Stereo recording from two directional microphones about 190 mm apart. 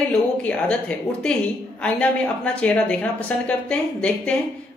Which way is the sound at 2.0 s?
5° left (ahead or behind).